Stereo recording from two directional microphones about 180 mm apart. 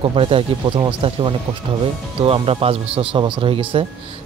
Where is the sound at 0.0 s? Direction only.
30° right (ahead or behind).